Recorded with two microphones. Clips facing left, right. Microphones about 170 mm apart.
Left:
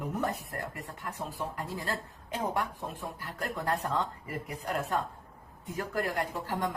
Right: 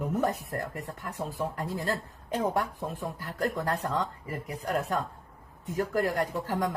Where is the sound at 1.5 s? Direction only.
40° right (ahead or behind).